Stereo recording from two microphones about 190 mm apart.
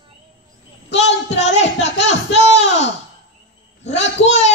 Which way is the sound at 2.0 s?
70° left (ahead or behind).